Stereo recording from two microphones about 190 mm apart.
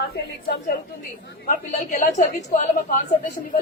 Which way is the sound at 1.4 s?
45° left (ahead or behind).